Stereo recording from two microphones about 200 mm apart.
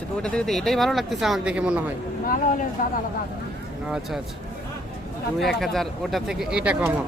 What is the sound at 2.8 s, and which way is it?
Speech, 40° left (ahead or behind).